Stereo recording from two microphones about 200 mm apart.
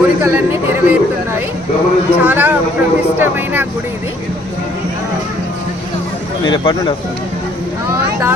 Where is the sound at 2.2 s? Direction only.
10° right (ahead or behind).